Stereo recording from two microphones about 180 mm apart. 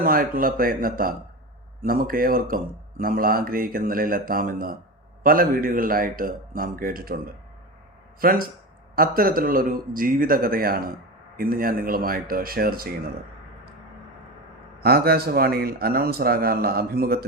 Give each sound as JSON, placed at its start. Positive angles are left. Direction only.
{"t": 0.0, "sound": "speech", "side_deg": -50}
{"t": 8.2, "sound": "speech", "side_deg": -55}
{"t": 14.8, "sound": "speech", "side_deg": -60}